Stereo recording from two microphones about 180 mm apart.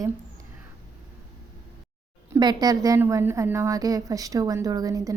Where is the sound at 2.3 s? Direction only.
20° right (ahead or behind).